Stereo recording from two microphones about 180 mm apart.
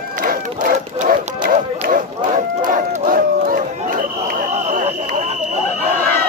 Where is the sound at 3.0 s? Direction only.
50° right (ahead or behind).